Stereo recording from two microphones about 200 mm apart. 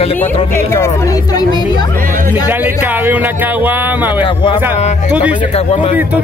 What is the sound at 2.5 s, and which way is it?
Speech, 10° right (ahead or behind).